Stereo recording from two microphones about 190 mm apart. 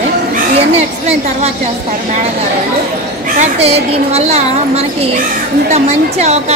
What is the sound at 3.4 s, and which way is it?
A woman's voice, 35° right (ahead or behind).